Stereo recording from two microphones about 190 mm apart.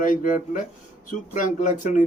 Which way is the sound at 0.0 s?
45° left (ahead or behind).